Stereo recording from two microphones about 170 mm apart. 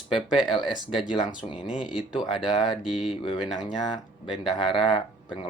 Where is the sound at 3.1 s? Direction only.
30° left (ahead or behind).